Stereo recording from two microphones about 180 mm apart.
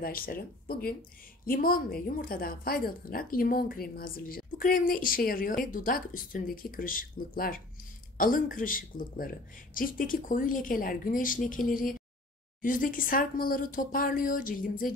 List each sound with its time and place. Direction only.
0.0 s speech: 55° left (ahead or behind)